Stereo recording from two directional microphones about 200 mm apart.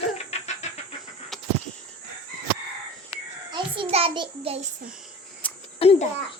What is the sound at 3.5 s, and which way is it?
Child singing, 25° right (ahead or behind).